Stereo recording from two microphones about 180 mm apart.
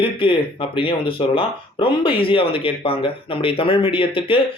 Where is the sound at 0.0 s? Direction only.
30° left (ahead or behind).